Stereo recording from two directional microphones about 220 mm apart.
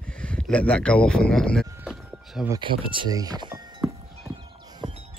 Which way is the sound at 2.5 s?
20° right (ahead or behind).